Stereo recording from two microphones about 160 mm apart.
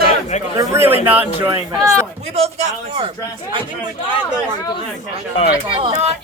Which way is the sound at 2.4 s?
40° right (ahead or behind).